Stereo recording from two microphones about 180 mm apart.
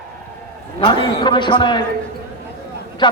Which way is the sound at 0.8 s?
30° left (ahead or behind).